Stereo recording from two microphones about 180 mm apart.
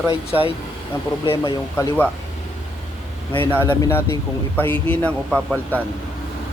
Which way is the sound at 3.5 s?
15° left (ahead or behind).